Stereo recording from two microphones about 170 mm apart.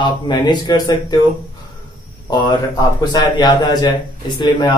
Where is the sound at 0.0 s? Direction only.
25° left (ahead or behind).